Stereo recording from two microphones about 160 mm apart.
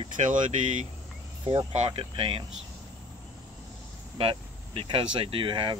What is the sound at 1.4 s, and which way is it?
Speech, 30° right (ahead or behind).